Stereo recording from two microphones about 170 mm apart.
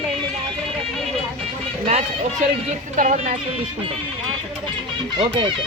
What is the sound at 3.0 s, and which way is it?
Speech, 50° right (ahead or behind).